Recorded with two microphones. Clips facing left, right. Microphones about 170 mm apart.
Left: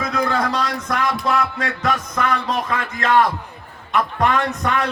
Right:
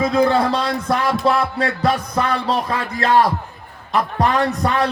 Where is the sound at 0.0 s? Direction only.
30° right (ahead or behind).